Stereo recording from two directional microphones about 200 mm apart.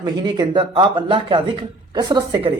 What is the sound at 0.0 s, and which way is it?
Speech, 20° right (ahead or behind).